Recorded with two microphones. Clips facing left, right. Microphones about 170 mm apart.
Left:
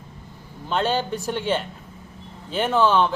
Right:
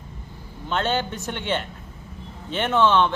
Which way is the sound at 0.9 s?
35° left (ahead or behind).